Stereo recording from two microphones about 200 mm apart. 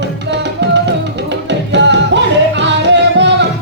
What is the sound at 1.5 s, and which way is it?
Music, 60° right (ahead or behind).